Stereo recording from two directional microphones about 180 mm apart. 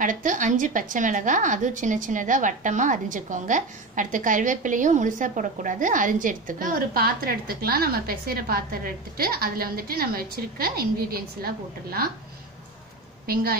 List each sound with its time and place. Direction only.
0.0 s a woman's voice: 45° right (ahead or behind)
13.3 s a woman's voice: 55° right (ahead or behind)